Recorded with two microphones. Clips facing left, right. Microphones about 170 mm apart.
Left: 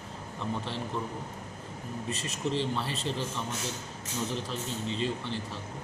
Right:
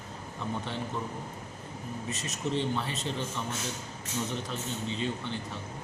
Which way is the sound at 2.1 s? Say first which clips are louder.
Left 1 dB; 30° left (ahead or behind).